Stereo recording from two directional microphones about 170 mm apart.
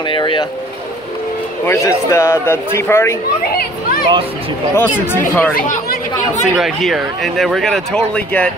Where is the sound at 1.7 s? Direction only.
15° left (ahead or behind).